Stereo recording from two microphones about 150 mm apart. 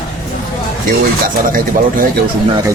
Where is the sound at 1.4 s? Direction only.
65° right (ahead or behind).